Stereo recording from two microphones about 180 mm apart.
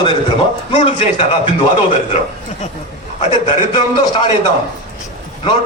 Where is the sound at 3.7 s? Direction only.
25° left (ahead or behind).